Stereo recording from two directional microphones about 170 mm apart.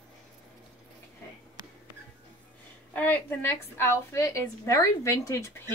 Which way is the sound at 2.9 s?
10° left (ahead or behind).